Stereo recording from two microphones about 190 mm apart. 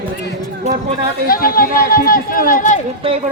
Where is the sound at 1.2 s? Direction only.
50° left (ahead or behind).